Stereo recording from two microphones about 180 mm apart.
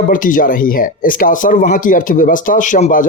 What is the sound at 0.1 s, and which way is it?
A man's voice, 50° left (ahead or behind).